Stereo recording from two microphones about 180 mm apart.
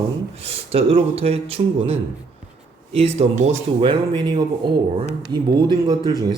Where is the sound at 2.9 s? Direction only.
35° right (ahead or behind).